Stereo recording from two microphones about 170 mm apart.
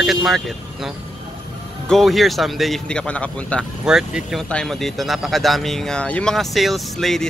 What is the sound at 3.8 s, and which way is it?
Speech, 5° right (ahead or behind).